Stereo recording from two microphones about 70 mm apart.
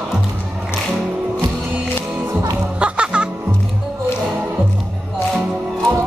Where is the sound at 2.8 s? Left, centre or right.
Centre.